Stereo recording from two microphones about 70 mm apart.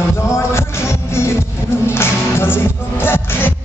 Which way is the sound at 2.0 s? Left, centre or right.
Left.